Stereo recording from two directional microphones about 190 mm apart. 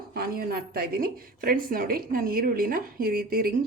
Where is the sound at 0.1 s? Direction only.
55° right (ahead or behind).